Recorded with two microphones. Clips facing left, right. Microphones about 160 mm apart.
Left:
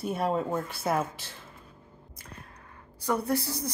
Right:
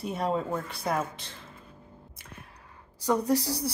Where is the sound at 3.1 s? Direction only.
15° right (ahead or behind).